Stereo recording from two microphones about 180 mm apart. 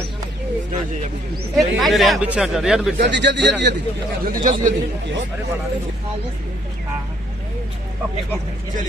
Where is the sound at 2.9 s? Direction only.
70° right (ahead or behind).